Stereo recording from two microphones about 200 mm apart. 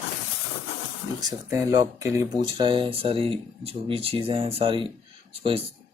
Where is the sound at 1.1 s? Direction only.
15° right (ahead or behind).